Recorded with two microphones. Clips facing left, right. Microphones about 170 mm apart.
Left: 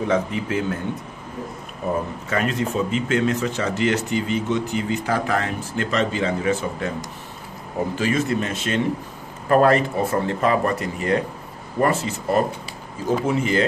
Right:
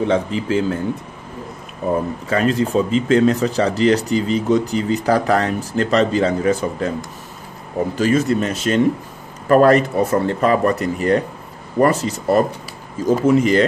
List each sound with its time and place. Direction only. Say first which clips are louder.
0.0 s speech: right 3 dB; 30° right (ahead or behind)
2.2 s speech: right 6 dB; 35° right (ahead or behind)
8.0 s speech: right 6 dB; 40° right (ahead or behind)